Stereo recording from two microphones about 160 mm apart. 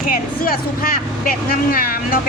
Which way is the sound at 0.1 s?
65° left (ahead or behind).